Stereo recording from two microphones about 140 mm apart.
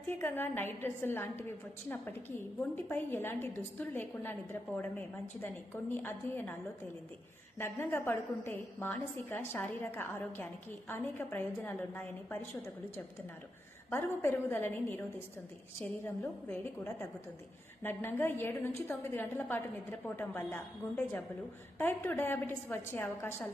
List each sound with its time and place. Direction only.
0.1 s a woman's voice: 15° left (ahead or behind)
7.6 s a woman's voice: 15° left (ahead or behind)
13.9 s a woman's voice: 15° left (ahead or behind)
16.0 s a woman's voice: 15° left (ahead or behind)